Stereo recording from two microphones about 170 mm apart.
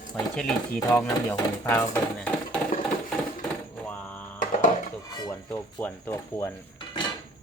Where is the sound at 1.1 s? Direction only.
15° left (ahead or behind).